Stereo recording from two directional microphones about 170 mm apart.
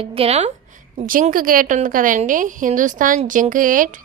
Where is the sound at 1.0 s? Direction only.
55° right (ahead or behind).